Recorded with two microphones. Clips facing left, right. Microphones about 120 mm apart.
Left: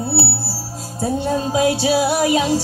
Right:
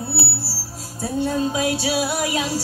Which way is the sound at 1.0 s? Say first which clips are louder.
Left 2 dB; 25° left (ahead or behind).